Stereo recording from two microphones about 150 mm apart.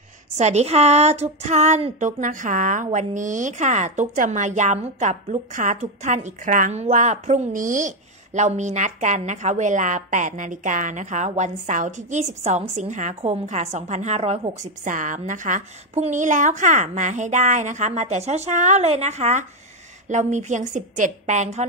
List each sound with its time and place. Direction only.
0.4 s speech: 45° right (ahead or behind)